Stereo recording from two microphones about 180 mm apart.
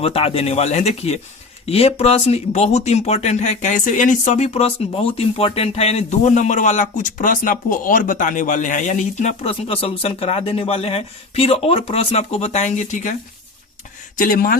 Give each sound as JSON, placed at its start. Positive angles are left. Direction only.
{"t": 0.0, "sound": "speech", "side_deg": 35}
{"t": 14.2, "sound": "speech", "side_deg": 50}